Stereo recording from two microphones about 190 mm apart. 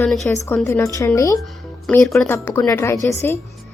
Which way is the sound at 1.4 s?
Centre (ahead or behind).